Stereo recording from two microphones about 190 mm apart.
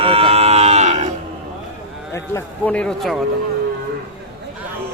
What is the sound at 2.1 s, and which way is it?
Speech, 15° left (ahead or behind).